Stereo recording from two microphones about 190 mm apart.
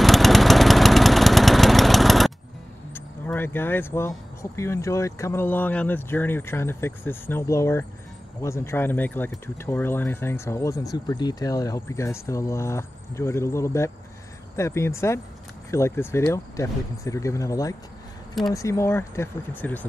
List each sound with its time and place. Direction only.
0.0 s engine: centre (ahead or behind)
2.9 s speech: 10° left (ahead or behind)